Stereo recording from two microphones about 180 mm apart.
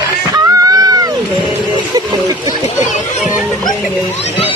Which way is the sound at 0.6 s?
20° right (ahead or behind).